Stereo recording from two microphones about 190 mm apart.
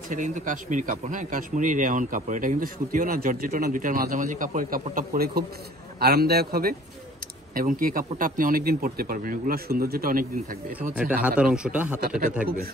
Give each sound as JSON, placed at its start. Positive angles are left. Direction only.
{"t": 0.1, "sound": "a man's voice", "side_deg": -40}
{"t": 11.2, "sound": "speech", "side_deg": -5}